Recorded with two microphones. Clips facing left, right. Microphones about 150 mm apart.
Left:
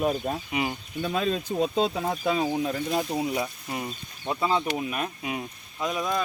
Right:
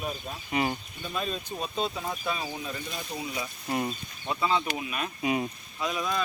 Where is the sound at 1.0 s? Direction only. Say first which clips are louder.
Left 6 dB; 90° left; by 3.4 s 60° left (ahead or behind).